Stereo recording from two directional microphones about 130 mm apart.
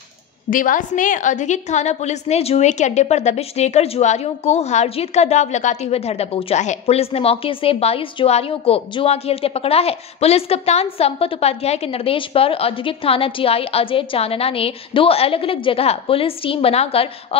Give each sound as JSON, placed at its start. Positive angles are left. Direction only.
{"t": 0.5, "sound": "a woman's voice", "side_deg": 90}